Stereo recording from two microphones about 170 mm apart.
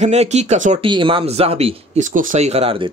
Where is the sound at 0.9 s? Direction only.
30° right (ahead or behind).